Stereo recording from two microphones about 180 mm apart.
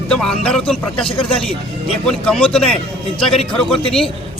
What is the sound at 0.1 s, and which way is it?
A man's voice, 5° left (ahead or behind).